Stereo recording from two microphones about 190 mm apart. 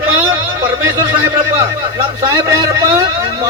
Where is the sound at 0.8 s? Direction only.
15° right (ahead or behind).